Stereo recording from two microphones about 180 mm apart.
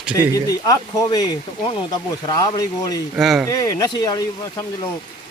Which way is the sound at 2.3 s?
20° left (ahead or behind).